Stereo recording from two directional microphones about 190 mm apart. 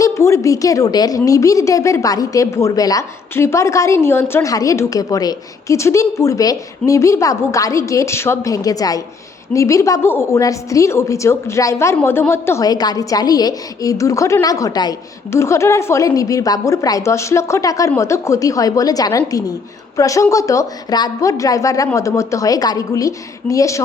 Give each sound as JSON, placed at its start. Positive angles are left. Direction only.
{"t": 0.0, "sound": "a woman's voice", "side_deg": 15}